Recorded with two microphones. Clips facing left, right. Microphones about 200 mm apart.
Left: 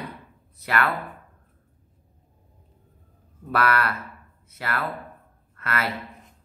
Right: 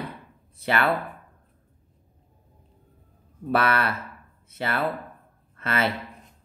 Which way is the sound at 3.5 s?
25° right (ahead or behind).